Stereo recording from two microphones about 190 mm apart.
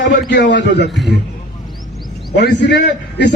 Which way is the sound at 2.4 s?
60° left (ahead or behind).